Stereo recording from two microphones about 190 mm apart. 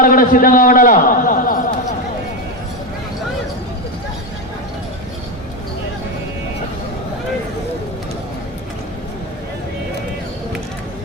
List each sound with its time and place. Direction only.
0.0 s a man's voice: 45° left (ahead or behind)